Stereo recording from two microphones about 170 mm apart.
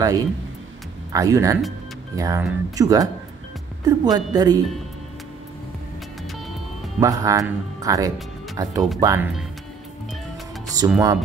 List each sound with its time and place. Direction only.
0.0 s speech: 20° right (ahead or behind)
7.0 s speech: 20° right (ahead or behind)
10.8 s speech: 20° right (ahead or behind)